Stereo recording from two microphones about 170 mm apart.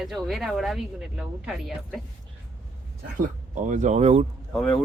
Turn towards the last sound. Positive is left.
turn(degrees=5)  # may be behind; listen again after turning